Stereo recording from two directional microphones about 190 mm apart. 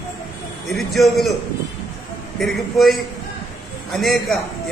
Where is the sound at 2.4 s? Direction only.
Centre (ahead or behind).